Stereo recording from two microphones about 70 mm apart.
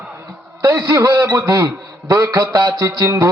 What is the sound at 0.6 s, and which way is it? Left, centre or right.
Music, right.